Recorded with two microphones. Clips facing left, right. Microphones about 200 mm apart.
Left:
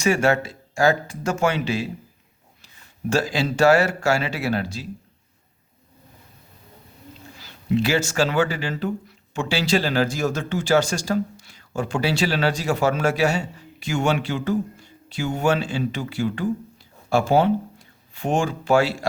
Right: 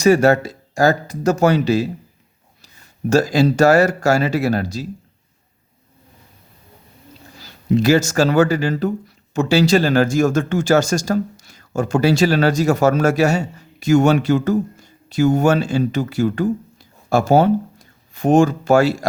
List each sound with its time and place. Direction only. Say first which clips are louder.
0.0 s speech: right 7 dB; 40° right (ahead or behind)
3.1 s speech: right 7 dB; 40° right (ahead or behind)
7.3 s speech: right 4 dB; 40° right (ahead or behind)